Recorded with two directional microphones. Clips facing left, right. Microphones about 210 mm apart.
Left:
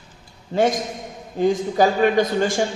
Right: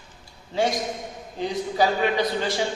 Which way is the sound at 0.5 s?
50° left (ahead or behind).